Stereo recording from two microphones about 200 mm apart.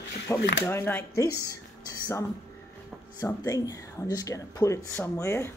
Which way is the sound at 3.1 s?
20° left (ahead or behind).